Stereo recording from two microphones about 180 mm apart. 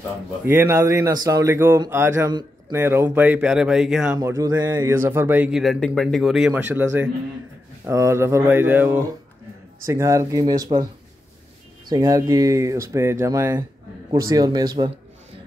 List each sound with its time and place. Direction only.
0.6 s speech: 15° right (ahead or behind)
4.2 s speech: 20° right (ahead or behind)
11.9 s speech: 20° right (ahead or behind)